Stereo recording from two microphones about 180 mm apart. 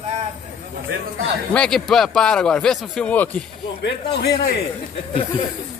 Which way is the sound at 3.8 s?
70° left (ahead or behind).